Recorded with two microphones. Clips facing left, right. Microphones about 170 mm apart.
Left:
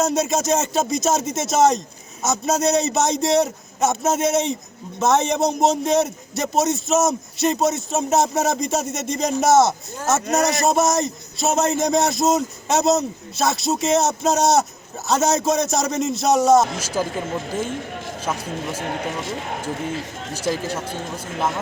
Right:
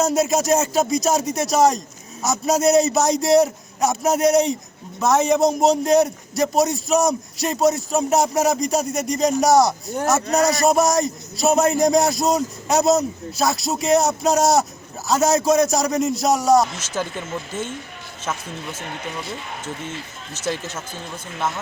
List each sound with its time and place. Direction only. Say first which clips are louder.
0.0 s a man's voice: right 2 dB; centre (ahead or behind)
10.2 s a man's voice: right 1 dB; 20° left (ahead or behind)
10.7 s a man's voice: right 1 dB; centre (ahead or behind)
17.0 s speech: left 2 dB; 35° left (ahead or behind)
20.5 s speech: left 3 dB; 35° left (ahead or behind)